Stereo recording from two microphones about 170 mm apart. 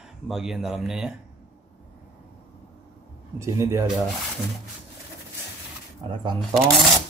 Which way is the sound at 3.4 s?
15° right (ahead or behind).